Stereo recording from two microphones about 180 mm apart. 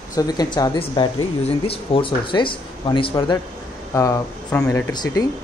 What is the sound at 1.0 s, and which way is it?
Speech, 30° left (ahead or behind).